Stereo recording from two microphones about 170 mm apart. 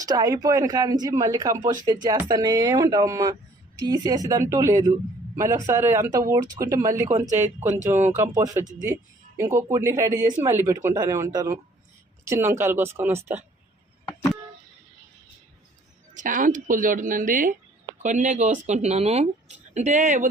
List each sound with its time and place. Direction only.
0.0 s speech: 20° right (ahead or behind)
16.1 s speech: 50° right (ahead or behind)